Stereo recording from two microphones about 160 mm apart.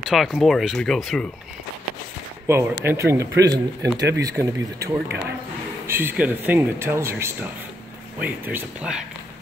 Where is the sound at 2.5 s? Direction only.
15° right (ahead or behind).